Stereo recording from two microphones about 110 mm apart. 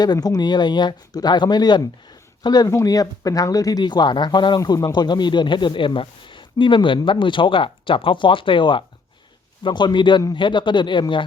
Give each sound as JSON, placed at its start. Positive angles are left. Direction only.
{"t": 0.0, "sound": "speech", "side_deg": 35}